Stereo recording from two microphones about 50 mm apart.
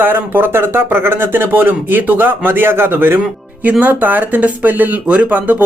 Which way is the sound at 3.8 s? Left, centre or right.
Right.